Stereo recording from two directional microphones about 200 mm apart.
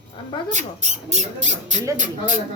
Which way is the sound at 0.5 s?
35° right (ahead or behind).